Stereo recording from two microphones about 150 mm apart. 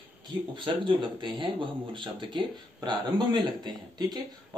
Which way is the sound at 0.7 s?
30° right (ahead or behind).